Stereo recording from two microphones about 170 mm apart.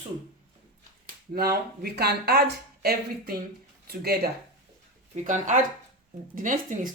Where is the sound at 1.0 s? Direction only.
60° right (ahead or behind).